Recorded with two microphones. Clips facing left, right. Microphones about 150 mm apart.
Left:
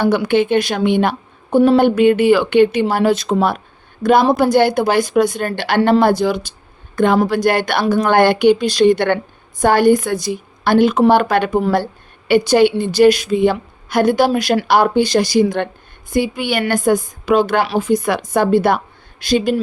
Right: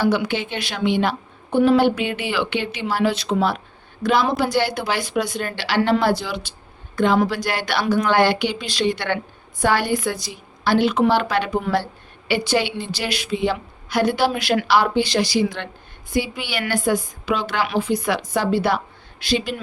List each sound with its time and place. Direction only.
0.0 s a woman's voice: 55° left (ahead or behind)